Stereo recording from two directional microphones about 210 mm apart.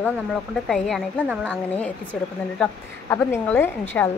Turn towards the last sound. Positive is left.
turn(degrees=10)  # may be behind; listen again after turning